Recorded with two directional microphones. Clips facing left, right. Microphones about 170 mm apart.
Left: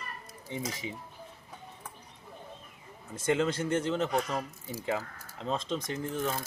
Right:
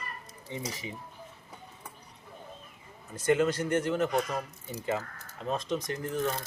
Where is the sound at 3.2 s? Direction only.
25° left (ahead or behind).